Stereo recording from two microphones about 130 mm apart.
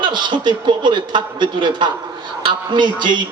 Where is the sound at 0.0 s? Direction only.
35° right (ahead or behind).